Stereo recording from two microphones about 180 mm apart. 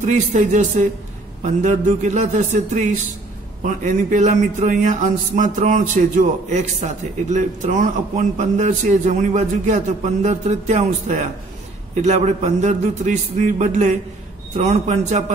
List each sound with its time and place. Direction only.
0.0 s a man's voice: 40° right (ahead or behind)